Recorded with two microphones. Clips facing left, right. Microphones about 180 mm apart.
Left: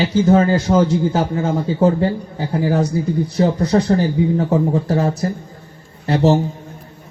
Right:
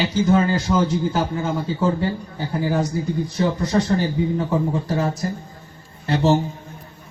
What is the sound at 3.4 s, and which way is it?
Speech, 45° left (ahead or behind).